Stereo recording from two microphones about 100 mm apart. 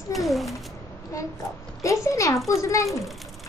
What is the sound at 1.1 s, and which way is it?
Child singing, 30° left (ahead or behind).